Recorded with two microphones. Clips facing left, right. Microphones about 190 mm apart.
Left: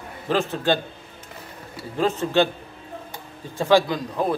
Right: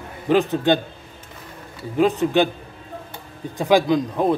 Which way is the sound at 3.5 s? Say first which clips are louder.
Right 2 dB; 15° right (ahead or behind).